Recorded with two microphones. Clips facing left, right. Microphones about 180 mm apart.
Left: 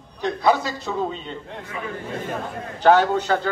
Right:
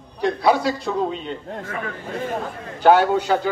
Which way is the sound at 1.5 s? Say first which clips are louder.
Right 4 dB; 50° right (ahead or behind).